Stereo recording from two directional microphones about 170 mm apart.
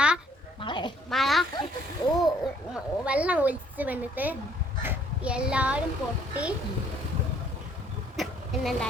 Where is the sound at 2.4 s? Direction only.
5° right (ahead or behind).